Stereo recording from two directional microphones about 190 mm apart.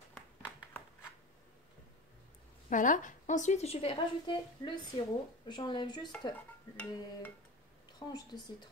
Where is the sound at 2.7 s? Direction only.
45° left (ahead or behind); by 6.0 s 25° left (ahead or behind).